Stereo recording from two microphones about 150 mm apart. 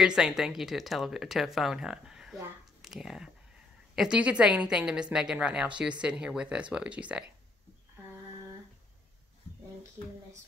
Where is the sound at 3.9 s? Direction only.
5° right (ahead or behind).